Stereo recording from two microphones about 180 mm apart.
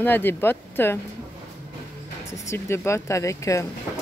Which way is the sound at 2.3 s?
15° left (ahead or behind).